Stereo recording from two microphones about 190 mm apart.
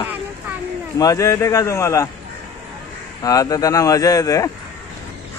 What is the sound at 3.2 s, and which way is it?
Speech, 20° left (ahead or behind).